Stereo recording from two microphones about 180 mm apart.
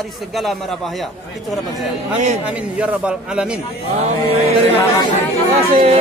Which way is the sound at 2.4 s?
5° right (ahead or behind).